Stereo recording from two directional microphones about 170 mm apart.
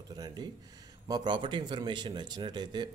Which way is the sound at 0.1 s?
25° right (ahead or behind).